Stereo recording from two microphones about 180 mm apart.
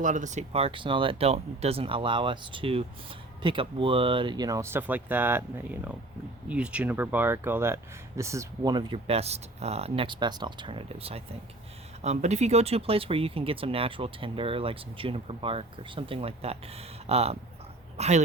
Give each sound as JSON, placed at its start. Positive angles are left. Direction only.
{"t": 0.0, "sound": "speech", "side_deg": -45}